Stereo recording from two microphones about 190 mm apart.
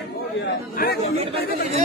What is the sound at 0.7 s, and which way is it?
Speech, 50° left (ahead or behind).